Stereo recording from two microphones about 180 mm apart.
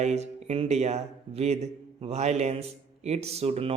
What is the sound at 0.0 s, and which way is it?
Speech, 35° right (ahead or behind).